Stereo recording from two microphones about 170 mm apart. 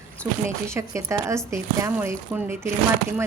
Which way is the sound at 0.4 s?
15° right (ahead or behind).